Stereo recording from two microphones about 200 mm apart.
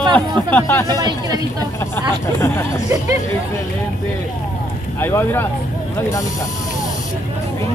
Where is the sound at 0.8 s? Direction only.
20° right (ahead or behind).